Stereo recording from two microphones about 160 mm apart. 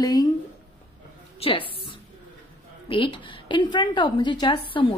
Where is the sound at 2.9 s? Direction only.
30° left (ahead or behind).